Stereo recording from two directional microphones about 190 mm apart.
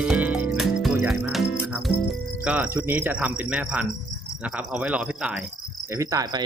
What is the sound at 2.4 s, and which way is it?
Cricket, 10° right (ahead or behind).